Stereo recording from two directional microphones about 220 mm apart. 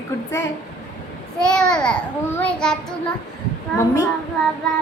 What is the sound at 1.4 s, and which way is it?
A child's voice, 5° left (ahead or behind).